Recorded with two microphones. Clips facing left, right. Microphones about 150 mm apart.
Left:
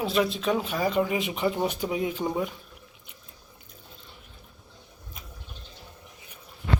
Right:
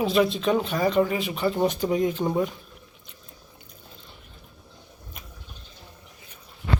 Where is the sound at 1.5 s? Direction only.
5° left (ahead or behind).